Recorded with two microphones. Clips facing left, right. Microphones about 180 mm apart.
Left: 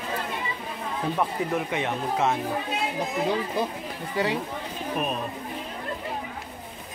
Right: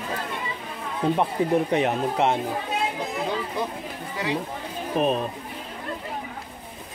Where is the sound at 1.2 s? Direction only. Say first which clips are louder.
Right 4 dB; 35° right (ahead or behind).